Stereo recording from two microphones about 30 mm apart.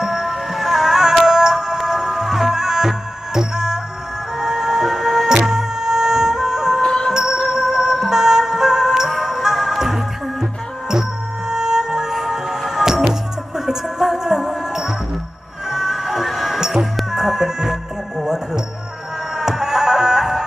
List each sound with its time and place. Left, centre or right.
0.0 s music: centre
11.4 s music: centre
19.4 s music: centre